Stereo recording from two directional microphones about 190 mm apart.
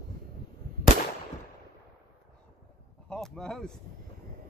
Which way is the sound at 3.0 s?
5° left (ahead or behind).